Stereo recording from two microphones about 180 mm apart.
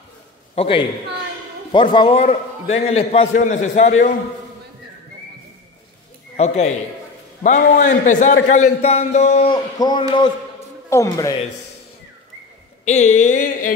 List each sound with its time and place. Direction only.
0.6 s a man's voice: 30° left (ahead or behind)
6.3 s a man's voice: 40° left (ahead or behind)
9.5 s speech: 25° left (ahead or behind)
12.8 s a man's voice: 40° left (ahead or behind)